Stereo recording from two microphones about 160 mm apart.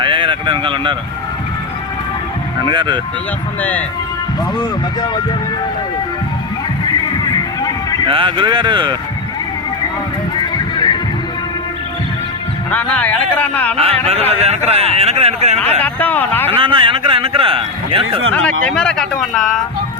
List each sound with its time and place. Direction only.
0.0 s speech: 30° right (ahead or behind)
2.6 s speech: 30° right (ahead or behind)
3.6 s speech: 10° left (ahead or behind)
8.0 s speech: 30° right (ahead or behind)
10.4 s music: 30° left (ahead or behind)
12.7 s speech: 10° left (ahead or behind)
13.7 s a man's voice: 40° right (ahead or behind)
15.8 s speech: 10° left (ahead or behind)
16.6 s a man's voice: 30° right (ahead or behind)
18.4 s speech: 5° left (ahead or behind)